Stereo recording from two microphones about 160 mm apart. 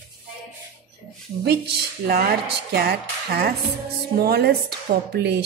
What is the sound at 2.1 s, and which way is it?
A woman's voice, 80° right.